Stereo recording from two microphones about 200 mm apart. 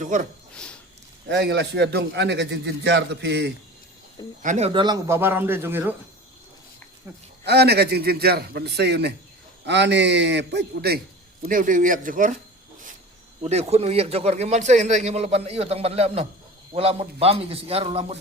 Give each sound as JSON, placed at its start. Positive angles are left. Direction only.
{"t": 0.0, "sound": "a man's voice", "side_deg": -40}
{"t": 0.5, "sound": "a sound", "side_deg": 5}
{"t": 1.3, "sound": "a man's voice", "side_deg": -60}
{"t": 4.4, "sound": "a man's voice", "side_deg": -35}
{"t": 7.4, "sound": "a man's voice", "side_deg": -55}
{"t": 13.4, "sound": "a man's voice", "side_deg": -30}